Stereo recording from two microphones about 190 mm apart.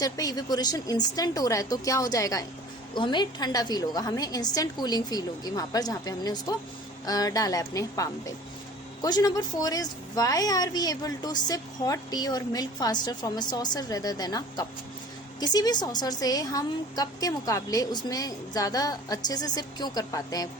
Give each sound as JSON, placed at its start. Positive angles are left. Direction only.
{"t": 0.0, "sound": "a woman's voice", "side_deg": 20}